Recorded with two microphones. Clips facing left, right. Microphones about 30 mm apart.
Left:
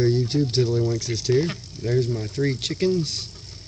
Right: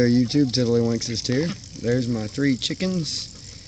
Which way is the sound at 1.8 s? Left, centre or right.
Centre.